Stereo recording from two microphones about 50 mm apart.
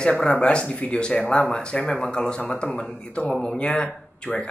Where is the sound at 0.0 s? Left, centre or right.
Centre.